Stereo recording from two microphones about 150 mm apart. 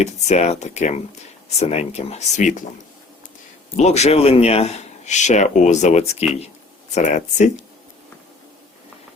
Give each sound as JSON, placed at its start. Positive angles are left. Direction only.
{"t": 0.0, "sound": "a man's voice", "side_deg": 50}
{"t": 3.8, "sound": "a man's voice", "side_deg": 50}